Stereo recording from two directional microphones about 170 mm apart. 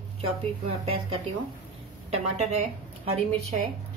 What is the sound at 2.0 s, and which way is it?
Speech, 40° right (ahead or behind).